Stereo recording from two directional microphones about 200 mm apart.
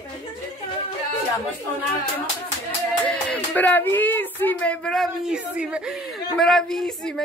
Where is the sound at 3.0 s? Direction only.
5° left (ahead or behind).